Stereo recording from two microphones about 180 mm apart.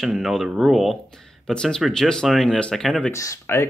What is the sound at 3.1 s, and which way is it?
Speech, 15° left (ahead or behind).